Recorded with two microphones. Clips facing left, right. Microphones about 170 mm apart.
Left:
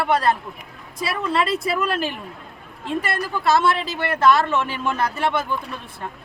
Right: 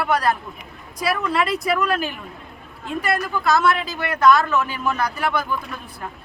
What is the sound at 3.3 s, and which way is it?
A woman's voice, 30° left (ahead or behind).